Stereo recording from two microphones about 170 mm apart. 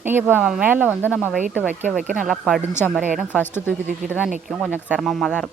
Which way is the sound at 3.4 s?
10° left (ahead or behind).